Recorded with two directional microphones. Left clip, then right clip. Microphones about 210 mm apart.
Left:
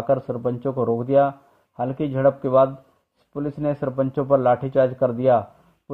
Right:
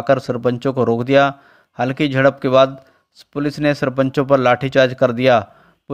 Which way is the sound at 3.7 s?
45° right (ahead or behind).